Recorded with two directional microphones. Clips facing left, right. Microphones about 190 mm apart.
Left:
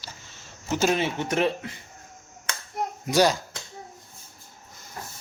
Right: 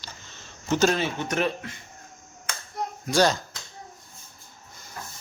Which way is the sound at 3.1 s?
10° left (ahead or behind).